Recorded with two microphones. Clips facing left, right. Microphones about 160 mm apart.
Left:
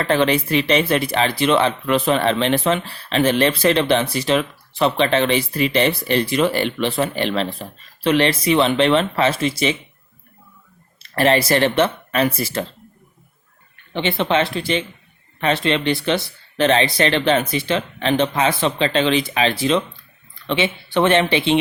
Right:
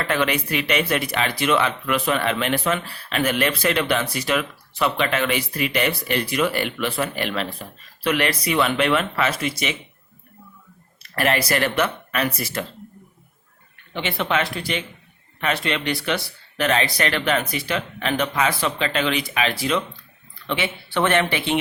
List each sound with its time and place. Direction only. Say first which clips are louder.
0.0 s speech: left 5 dB; 30° left (ahead or behind)
11.0 s speech: left 5 dB; 30° left (ahead or behind)
13.9 s speech: left 5 dB; 25° left (ahead or behind)